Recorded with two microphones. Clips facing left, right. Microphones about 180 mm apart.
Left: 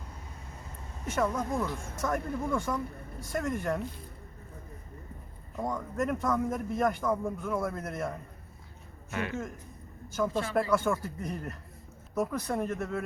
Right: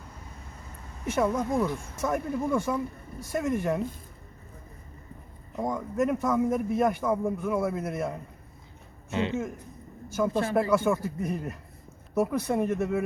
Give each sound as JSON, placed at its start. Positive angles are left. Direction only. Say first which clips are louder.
{"t": 1.1, "sound": "a man's voice", "louder": "right 4 dB", "side_deg": -10}
{"t": 5.5, "sound": "a man's voice", "louder": "right 4 dB", "side_deg": -10}
{"t": 9.0, "sound": "a man's voice", "louder": "right 6 dB", "side_deg": -20}